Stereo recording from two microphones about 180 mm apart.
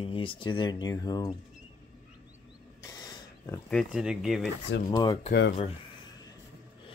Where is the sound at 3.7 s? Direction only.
Centre (ahead or behind).